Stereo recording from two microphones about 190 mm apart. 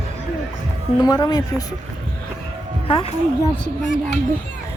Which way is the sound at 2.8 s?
30° left (ahead or behind).